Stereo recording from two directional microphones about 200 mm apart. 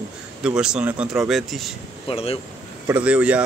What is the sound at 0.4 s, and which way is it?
Speech, 5° right (ahead or behind).